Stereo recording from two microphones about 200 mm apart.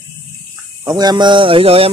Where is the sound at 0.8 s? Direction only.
20° right (ahead or behind).